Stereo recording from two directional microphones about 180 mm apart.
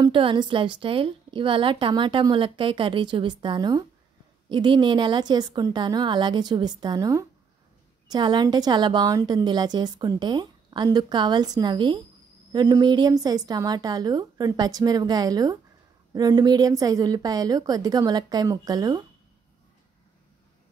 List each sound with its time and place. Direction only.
0.0 s a woman's voice: 30° right (ahead or behind)